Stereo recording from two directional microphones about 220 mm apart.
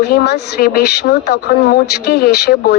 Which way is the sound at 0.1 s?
45° left (ahead or behind).